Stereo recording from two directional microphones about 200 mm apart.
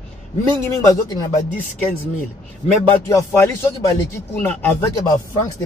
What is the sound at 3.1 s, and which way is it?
A man's voice, 15° left (ahead or behind).